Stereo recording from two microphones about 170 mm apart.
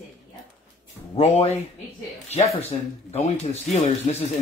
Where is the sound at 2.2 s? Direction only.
40° left (ahead or behind).